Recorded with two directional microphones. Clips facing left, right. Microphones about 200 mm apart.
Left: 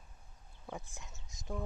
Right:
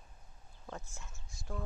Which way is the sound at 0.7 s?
15° left (ahead or behind).